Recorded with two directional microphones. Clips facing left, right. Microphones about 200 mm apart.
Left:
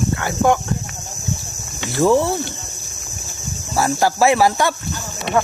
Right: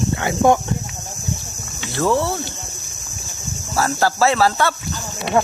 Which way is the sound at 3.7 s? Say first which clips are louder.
Left 1 dB; 15° left (ahead or behind).